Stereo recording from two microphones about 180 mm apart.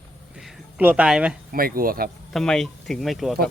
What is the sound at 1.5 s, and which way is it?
Speech, 55° right (ahead or behind).